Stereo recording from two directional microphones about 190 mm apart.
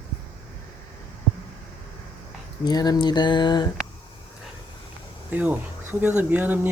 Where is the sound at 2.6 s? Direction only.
20° left (ahead or behind).